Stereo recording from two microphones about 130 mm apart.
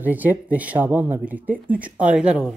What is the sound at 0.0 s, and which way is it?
Speech, 15° right (ahead or behind).